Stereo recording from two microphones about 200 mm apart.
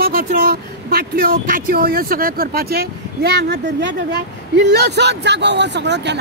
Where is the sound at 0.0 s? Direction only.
45° right (ahead or behind).